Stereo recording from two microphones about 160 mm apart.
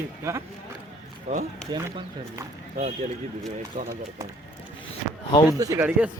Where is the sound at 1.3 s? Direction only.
45° right (ahead or behind).